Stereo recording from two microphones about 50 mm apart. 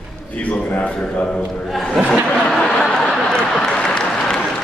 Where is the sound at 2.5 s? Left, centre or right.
Centre.